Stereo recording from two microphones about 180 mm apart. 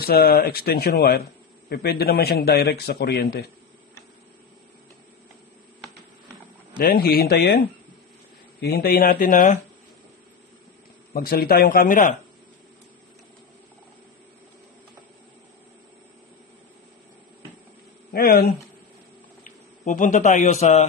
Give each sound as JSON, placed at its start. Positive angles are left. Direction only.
{"t": 0.0, "sound": "a man's voice", "side_deg": 60}
{"t": 6.8, "sound": "a man's voice", "side_deg": 55}
{"t": 11.1, "sound": "speech", "side_deg": 55}
{"t": 18.1, "sound": "a man's voice", "side_deg": 55}
{"t": 19.4, "sound": "a man's voice", "side_deg": 45}